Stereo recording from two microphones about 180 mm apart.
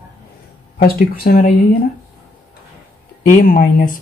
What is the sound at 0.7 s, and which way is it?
Speech, 55° left (ahead or behind).